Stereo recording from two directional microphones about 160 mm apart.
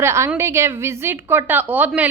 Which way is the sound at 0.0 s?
15° right (ahead or behind).